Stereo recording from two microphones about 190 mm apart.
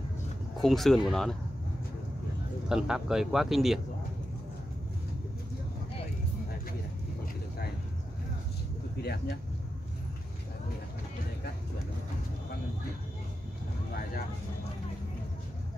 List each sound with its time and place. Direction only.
0.6 s speech: centre (ahead or behind)
2.7 s speech: 5° right (ahead or behind)
9.0 s speech: 55° left (ahead or behind)